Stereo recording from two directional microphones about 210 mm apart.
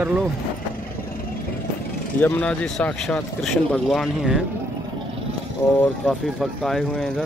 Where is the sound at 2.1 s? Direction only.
10° left (ahead or behind).